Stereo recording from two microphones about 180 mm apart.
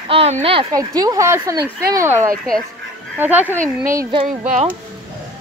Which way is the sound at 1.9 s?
15° right (ahead or behind).